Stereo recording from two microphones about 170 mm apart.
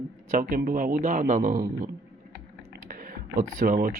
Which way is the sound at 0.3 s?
55° right (ahead or behind).